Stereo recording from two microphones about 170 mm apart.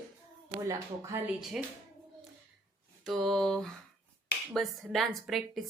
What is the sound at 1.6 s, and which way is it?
Speech, 5° right (ahead or behind).